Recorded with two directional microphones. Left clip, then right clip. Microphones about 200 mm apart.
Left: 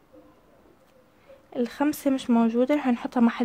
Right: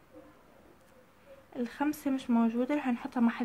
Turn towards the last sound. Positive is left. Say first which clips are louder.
# left 7 dB
turn(degrees=40)  # may be behind; listen again after turning